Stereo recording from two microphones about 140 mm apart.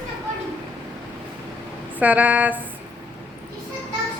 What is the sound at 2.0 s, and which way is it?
Speech, 10° right (ahead or behind).